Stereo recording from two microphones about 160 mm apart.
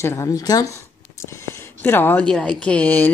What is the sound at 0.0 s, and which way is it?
Speech, 15° left (ahead or behind).